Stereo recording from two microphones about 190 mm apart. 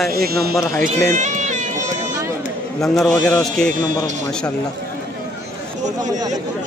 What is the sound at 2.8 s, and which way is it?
Speech, centre (ahead or behind).